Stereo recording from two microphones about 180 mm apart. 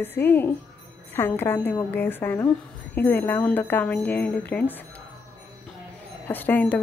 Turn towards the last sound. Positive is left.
turn(degrees=10)  # may be behind; listen again after turning